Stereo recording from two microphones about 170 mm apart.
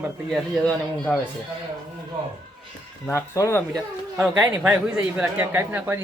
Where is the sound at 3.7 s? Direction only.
5° right (ahead or behind).